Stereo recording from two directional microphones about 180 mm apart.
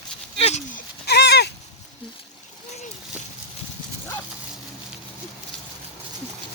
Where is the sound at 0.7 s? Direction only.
60° left (ahead or behind).